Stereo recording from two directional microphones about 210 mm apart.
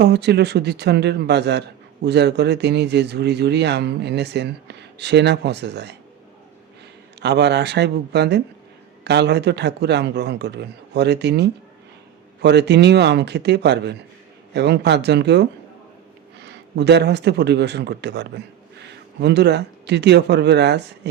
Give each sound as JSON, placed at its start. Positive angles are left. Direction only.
{"t": 0.0, "sound": "speech", "side_deg": -55}
{"t": 7.2, "sound": "speech", "side_deg": -55}